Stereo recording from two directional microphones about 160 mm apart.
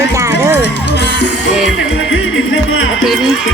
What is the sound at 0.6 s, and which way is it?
Speech, 90° left.